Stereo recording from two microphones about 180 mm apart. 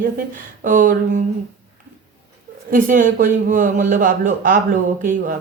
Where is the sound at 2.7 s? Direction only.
45° right (ahead or behind).